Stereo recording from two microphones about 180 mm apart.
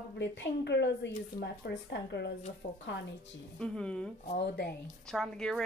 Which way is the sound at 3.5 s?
5° left (ahead or behind).